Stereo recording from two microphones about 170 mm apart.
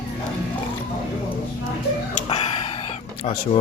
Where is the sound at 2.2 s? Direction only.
30° left (ahead or behind).